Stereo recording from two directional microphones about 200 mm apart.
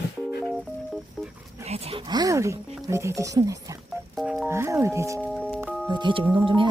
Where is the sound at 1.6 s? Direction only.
30° right (ahead or behind).